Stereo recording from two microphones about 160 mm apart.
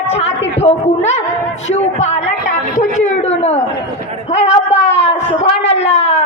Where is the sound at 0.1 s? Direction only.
40° left (ahead or behind).